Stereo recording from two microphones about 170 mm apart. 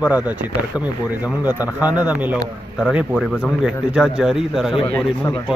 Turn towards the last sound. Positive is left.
turn(degrees=-5)  # may be behind; listen again after turning